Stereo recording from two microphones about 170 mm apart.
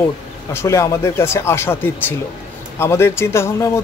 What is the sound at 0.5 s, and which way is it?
Speech, 15° left (ahead or behind).